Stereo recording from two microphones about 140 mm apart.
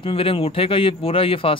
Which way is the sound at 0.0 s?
40° left (ahead or behind).